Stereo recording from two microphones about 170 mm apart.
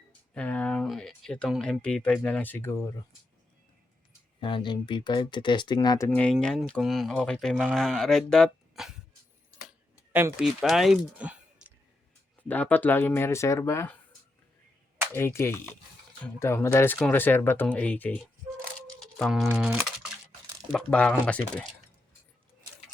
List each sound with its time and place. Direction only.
0.3 s speech: 10° left (ahead or behind)
4.4 s speech: 30° left (ahead or behind)
6.1 s speech: 5° left (ahead or behind)
9.6 s a sound: 10° right (ahead or behind)
12.4 s speech: 10° left (ahead or behind)
15.1 s speech: 15° left (ahead or behind)
18.9 s music: centre (ahead or behind)
19.7 s a sound: 10° right (ahead or behind)
20.7 s speech: 5° left (ahead or behind)